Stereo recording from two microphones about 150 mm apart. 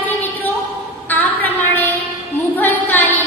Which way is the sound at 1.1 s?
10° left (ahead or behind).